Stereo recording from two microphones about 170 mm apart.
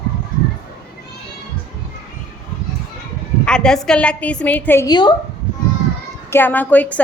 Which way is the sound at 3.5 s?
5° left (ahead or behind).